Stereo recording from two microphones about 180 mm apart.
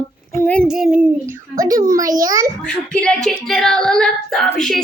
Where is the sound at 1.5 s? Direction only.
20° right (ahead or behind).